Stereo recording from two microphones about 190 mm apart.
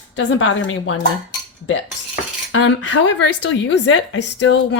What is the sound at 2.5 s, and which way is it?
Speech, 90° left.